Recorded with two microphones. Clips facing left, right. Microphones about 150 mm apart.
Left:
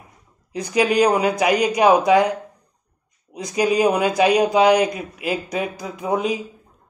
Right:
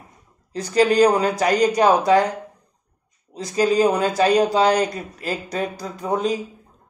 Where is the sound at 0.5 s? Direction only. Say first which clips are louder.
Right 2 dB; 10° left (ahead or behind).